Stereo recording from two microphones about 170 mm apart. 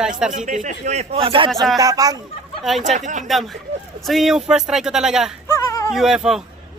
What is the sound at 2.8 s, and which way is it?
Speech, 45° right (ahead or behind).